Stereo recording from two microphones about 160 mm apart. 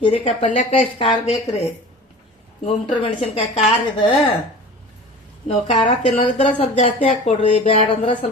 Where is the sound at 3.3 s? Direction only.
40° left (ahead or behind).